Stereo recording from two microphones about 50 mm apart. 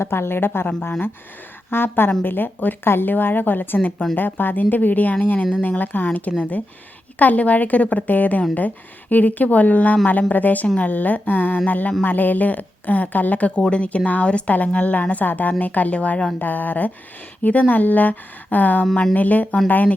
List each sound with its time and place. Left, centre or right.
0.0 s speech: left
1.7 s speech: left
13.6 s speech: left
16.4 s speech: left